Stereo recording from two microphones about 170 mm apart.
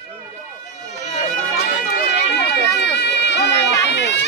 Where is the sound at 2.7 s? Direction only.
80° left.